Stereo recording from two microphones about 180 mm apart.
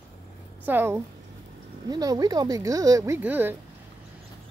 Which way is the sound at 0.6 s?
10° right (ahead or behind).